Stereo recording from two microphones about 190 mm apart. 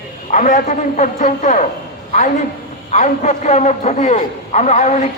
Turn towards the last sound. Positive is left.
turn(degrees=35)  # may be behind; listen again after turning